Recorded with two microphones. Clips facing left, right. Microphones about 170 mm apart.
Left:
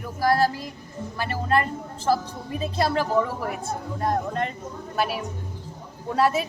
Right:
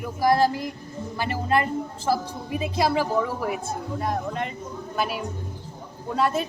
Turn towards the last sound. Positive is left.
turn(degrees=5)  # may be behind; listen again after turning